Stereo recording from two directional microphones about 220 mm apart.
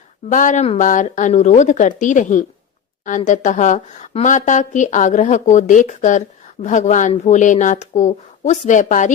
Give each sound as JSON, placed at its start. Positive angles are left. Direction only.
{"t": 0.3, "sound": "a woman's voice", "side_deg": 35}